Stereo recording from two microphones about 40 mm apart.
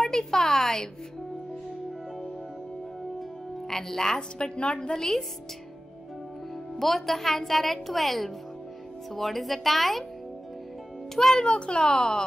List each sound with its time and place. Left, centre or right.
0.0 s a woman's voice: centre
3.6 s a woman's voice: centre
6.8 s a woman's voice: centre
11.1 s a woman's voice: centre
11.4 s a child's voice: left